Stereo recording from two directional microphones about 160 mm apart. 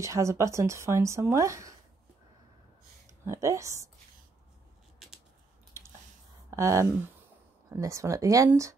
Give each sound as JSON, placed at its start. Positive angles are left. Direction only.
{"t": 0.0, "sound": "speech", "side_deg": -20}
{"t": 3.3, "sound": "speech", "side_deg": -20}
{"t": 4.9, "sound": "a sound", "side_deg": 0}
{"t": 6.5, "sound": "speech", "side_deg": -20}